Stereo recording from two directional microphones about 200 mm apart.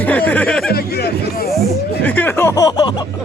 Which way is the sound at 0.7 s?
50° left (ahead or behind).